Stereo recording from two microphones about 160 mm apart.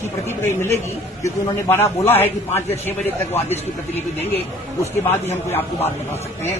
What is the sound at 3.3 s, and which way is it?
Speech, 15° left (ahead or behind).